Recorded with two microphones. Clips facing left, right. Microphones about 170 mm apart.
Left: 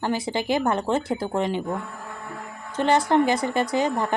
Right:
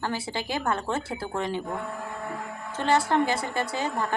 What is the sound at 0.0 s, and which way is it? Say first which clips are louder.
A woman's voice: left 5 dB; 20° left (ahead or behind).